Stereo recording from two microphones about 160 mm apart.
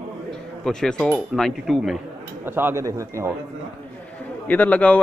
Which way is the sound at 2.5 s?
15° right (ahead or behind).